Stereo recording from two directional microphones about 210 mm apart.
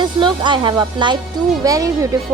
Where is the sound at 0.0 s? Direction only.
20° right (ahead or behind).